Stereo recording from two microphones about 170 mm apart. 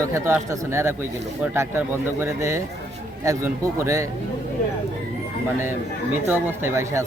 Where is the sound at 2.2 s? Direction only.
15° right (ahead or behind).